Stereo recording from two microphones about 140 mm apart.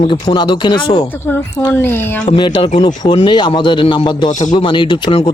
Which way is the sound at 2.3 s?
35° left (ahead or behind).